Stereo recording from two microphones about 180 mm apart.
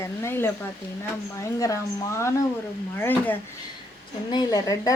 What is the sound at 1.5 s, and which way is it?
Speech, 15° left (ahead or behind).